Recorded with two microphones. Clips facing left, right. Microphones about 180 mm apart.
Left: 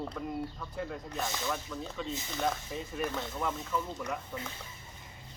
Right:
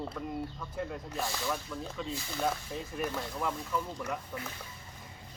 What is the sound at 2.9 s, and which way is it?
Speech, 5° right (ahead or behind).